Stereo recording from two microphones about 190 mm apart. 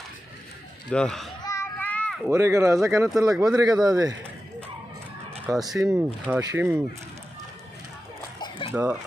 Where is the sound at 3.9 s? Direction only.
20° right (ahead or behind).